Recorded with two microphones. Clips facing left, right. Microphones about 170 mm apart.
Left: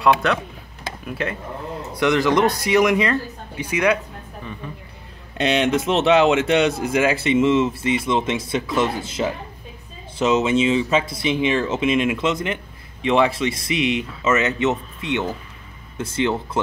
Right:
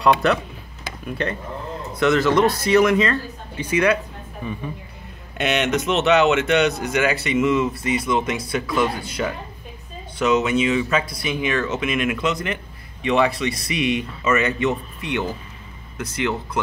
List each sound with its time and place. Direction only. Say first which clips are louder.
0.0 s a man's voice: right 1 dB; centre (ahead or behind)
5.4 s speech: left 2 dB; 30° left (ahead or behind)